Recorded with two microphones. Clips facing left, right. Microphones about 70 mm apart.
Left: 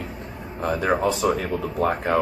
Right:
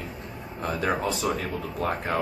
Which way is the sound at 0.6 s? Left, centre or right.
Left.